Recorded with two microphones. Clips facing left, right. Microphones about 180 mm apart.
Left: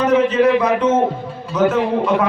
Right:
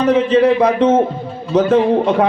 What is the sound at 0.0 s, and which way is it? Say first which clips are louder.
Speech: right 2 dB; 30° right (ahead or behind).